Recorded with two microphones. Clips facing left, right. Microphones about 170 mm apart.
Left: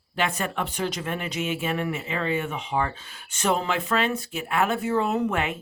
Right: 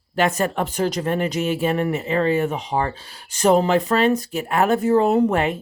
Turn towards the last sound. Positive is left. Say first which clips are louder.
# right 7 dB
turn(degrees=-35)  # may be behind; listen again after turning